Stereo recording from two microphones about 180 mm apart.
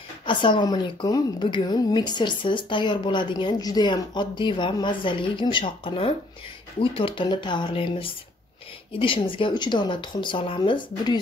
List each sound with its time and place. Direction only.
0.3 s a woman's voice: 25° left (ahead or behind)